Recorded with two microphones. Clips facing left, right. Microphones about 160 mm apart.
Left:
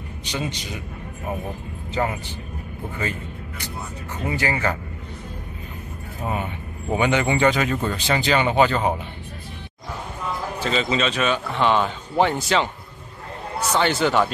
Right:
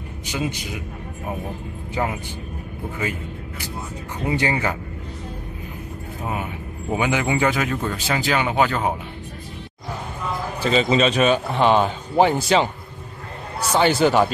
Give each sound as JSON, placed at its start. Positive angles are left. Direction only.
{"t": 0.3, "sound": "speech", "side_deg": -10}
{"t": 2.0, "sound": "speech", "side_deg": -10}
{"t": 6.2, "sound": "speech", "side_deg": -5}
{"t": 10.6, "sound": "a man's voice", "side_deg": -15}